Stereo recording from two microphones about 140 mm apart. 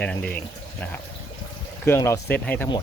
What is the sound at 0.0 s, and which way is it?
Speech, 5° left (ahead or behind).